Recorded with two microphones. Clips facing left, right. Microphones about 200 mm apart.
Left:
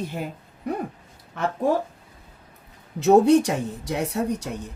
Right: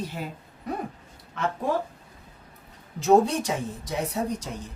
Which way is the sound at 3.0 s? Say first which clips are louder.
Left 5 dB; 65° left (ahead or behind).